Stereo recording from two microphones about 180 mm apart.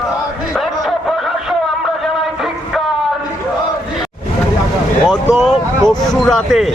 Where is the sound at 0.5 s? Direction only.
Centre (ahead or behind).